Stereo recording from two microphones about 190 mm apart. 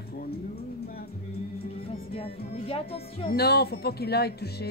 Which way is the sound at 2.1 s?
30° left (ahead or behind).